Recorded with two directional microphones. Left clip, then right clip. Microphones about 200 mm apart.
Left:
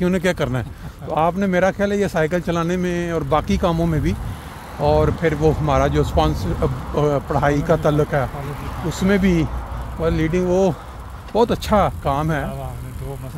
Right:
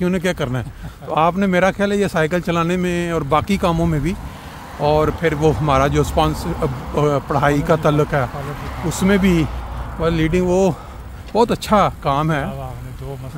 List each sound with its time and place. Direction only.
0.0 s speech: 10° left (ahead or behind)
1.1 s speech: 5° right (ahead or behind)